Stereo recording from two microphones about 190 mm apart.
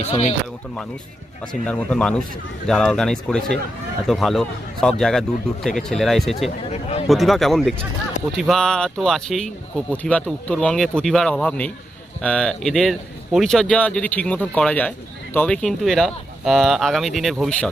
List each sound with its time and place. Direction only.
0.0 s speech: 35° left (ahead or behind)
1.6 s a man's voice: 5° left (ahead or behind)